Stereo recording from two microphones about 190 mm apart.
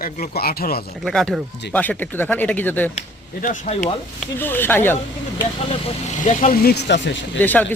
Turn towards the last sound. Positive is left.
turn(degrees=10)  # may be behind; listen again after turning